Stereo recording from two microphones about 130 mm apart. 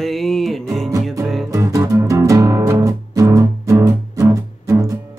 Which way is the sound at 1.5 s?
25° right (ahead or behind).